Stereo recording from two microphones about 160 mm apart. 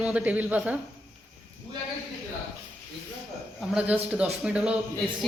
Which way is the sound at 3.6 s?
10° right (ahead or behind).